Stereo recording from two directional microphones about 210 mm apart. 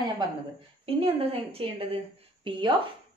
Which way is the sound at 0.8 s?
25° right (ahead or behind).